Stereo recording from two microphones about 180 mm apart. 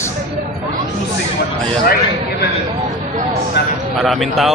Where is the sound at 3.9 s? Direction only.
Centre (ahead or behind).